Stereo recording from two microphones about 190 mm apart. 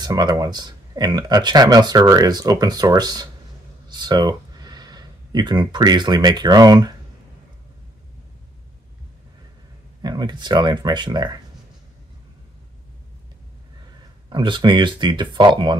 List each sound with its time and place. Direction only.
0.0 s speech: 20° right (ahead or behind)
10.0 s speech: 20° right (ahead or behind)
14.3 s speech: 25° right (ahead or behind)